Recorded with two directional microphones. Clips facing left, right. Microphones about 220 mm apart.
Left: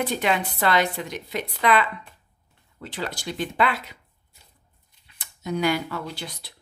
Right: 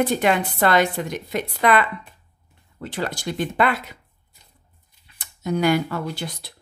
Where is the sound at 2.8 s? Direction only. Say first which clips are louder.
Right 4 dB; 50° right (ahead or behind).